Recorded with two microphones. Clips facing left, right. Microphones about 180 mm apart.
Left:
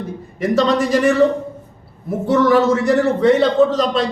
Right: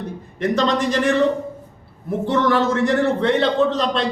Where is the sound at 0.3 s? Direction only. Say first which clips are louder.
Left 3 dB; 5° left (ahead or behind).